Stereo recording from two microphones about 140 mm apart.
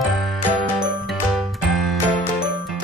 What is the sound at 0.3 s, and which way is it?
Music, centre (ahead or behind).